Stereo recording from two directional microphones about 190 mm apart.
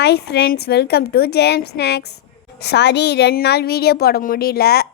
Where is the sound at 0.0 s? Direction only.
60° left (ahead or behind).